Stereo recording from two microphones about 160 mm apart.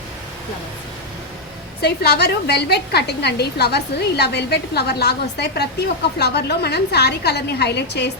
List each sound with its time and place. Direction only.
1.8 s a woman's voice: 90° left